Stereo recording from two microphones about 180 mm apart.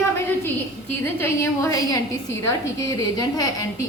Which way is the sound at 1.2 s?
15° left (ahead or behind).